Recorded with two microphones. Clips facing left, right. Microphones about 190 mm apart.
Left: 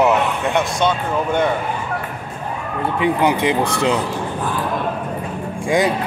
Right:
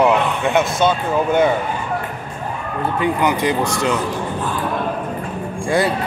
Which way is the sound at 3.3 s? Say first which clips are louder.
Left 1 dB; 55° left (ahead or behind).